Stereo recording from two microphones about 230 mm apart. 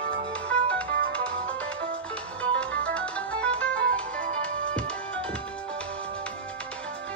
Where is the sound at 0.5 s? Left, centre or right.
Centre.